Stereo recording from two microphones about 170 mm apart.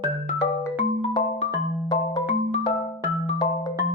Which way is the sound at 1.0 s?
35° left (ahead or behind).